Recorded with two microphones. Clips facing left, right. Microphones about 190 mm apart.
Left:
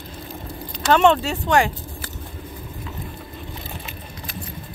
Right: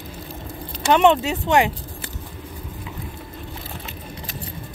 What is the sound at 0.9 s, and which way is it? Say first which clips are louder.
Speech: right 1 dB; 15° right (ahead or behind).